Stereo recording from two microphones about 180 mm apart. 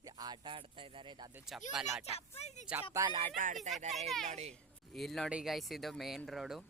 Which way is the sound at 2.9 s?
20° right (ahead or behind).